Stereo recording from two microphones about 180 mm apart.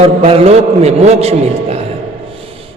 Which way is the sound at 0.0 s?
30° right (ahead or behind).